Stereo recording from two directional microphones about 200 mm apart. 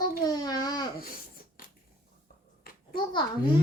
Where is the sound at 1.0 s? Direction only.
45° left (ahead or behind).